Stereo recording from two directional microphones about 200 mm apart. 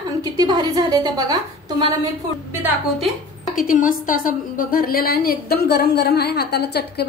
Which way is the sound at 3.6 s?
40° left (ahead or behind).